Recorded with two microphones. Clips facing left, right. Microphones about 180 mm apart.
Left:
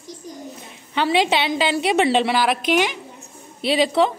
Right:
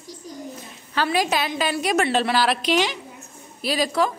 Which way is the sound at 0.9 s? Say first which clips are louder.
Left 3 dB; 25° left (ahead or behind).